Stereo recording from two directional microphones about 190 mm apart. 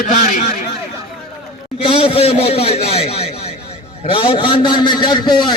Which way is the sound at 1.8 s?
30° left (ahead or behind).